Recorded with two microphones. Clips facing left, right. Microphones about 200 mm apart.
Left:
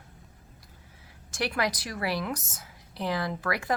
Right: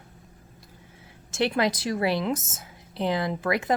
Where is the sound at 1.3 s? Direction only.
25° right (ahead or behind).